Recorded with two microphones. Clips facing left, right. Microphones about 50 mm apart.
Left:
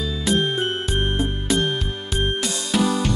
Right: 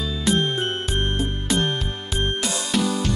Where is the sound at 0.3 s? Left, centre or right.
Centre.